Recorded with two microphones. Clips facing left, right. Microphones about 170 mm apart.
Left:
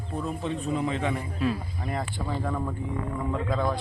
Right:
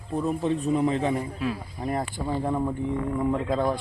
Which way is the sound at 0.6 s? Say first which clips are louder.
Right 3 dB; 35° right (ahead or behind).